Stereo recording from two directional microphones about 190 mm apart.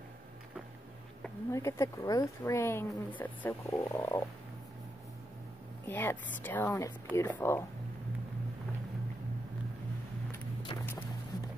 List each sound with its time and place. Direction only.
1.5 s speech: 15° left (ahead or behind)
5.9 s speech: 10° left (ahead or behind)
10.7 s music: 20° left (ahead or behind)